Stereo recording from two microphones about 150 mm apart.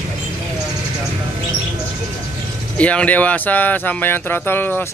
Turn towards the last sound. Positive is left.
turn(degrees=15)  # may be behind; listen again after turning